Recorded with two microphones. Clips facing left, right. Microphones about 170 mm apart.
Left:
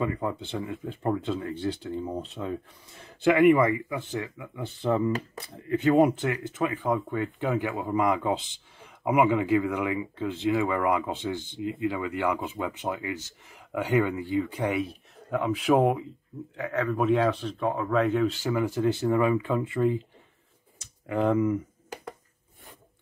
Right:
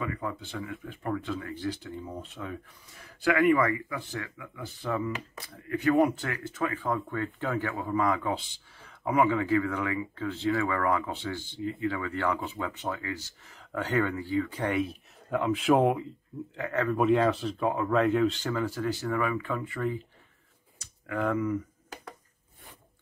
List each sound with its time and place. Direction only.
0.0 s speech: 25° left (ahead or behind)
14.6 s speech: centre (ahead or behind); by 21.5 s 25° left (ahead or behind)